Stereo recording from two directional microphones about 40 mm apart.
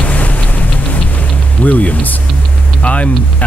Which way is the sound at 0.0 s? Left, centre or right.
Left.